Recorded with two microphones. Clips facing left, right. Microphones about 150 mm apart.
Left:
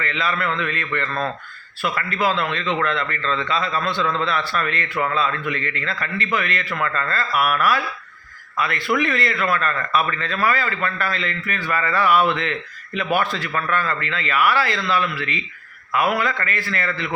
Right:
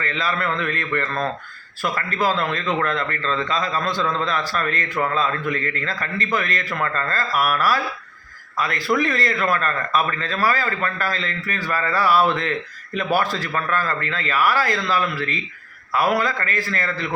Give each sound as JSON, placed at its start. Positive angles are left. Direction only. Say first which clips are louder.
{"t": 0.0, "sound": "a man's voice", "louder": "even", "side_deg": -35}